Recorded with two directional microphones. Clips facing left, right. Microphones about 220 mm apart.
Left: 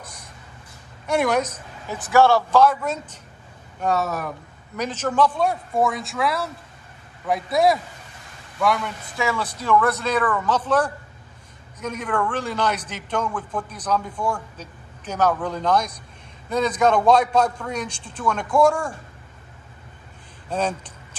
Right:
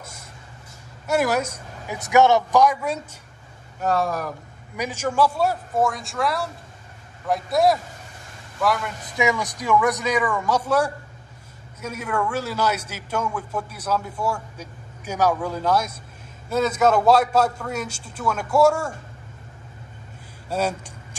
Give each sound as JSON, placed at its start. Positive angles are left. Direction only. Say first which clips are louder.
{"t": 1.0, "sound": "a man's voice", "louder": "left 1 dB", "side_deg": -5}
{"t": 3.8, "sound": "a man's voice", "louder": "even", "side_deg": 0}
{"t": 4.7, "sound": "a man's voice", "louder": "left 1 dB", "side_deg": -10}
{"t": 9.1, "sound": "a man's voice", "louder": "right 3 dB", "side_deg": -15}
{"t": 20.4, "sound": "speech", "louder": "even", "side_deg": -10}